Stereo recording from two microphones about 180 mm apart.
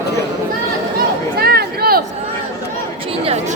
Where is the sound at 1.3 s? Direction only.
60° right (ahead or behind).